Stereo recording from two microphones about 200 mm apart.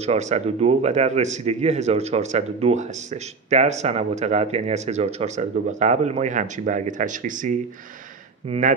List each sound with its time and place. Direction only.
0.0 s speech: 35° right (ahead or behind)